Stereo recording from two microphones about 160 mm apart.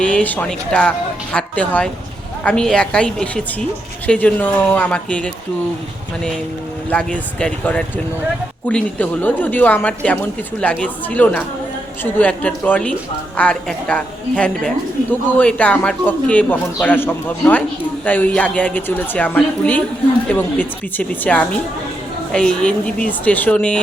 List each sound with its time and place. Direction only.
0.0 s a woman's voice: 5° left (ahead or behind)
6.9 s a woman's voice: 5° left (ahead or behind)